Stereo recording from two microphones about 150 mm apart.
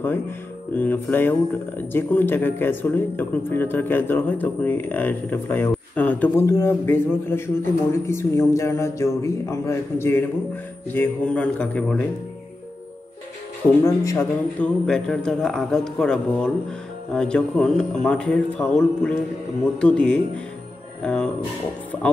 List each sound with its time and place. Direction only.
0.7 s speech: 10° left (ahead or behind)
13.8 s speech: 20° left (ahead or behind)
14.6 s speech: 5° left (ahead or behind)
21.0 s music: 5° left (ahead or behind)